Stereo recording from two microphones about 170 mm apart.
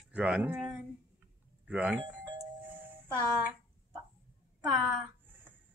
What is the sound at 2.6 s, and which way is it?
Doorbell, 10° right (ahead or behind).